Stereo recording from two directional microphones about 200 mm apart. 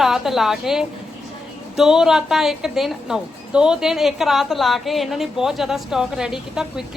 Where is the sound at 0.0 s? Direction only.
Centre (ahead or behind).